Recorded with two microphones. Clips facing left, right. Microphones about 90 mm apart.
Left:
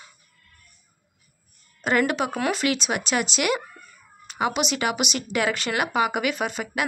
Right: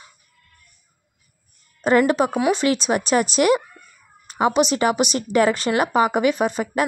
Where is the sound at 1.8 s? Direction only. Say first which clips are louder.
Right 6 dB; 35° right (ahead or behind).